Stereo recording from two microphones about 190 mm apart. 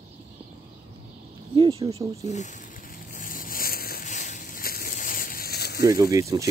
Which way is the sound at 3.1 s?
45° left (ahead or behind).